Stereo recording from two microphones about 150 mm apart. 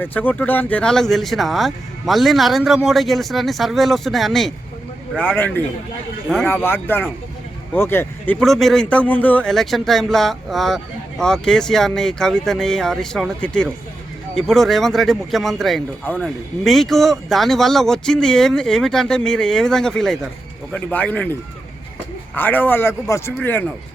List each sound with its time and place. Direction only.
0.0 s speech: 10° left (ahead or behind)
5.1 s speech: 10° left (ahead or behind)
8.4 s speech: centre (ahead or behind)
22.4 s speech: 10° left (ahead or behind)